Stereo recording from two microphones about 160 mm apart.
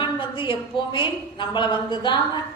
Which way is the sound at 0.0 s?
30° left (ahead or behind).